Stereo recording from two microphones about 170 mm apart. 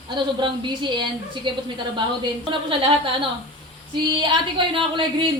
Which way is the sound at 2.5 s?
30° right (ahead or behind).